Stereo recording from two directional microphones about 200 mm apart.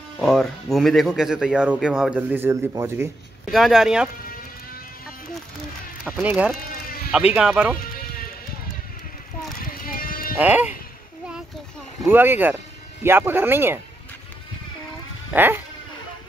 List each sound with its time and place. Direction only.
0.2 s speech: centre (ahead or behind)
3.5 s speech: centre (ahead or behind)
6.0 s speech: 5° right (ahead or behind)
9.6 s sheep: 45° left (ahead or behind)
10.3 s speech: 10° right (ahead or behind)
12.0 s speech: 10° right (ahead or behind)
15.3 s speech: 10° right (ahead or behind)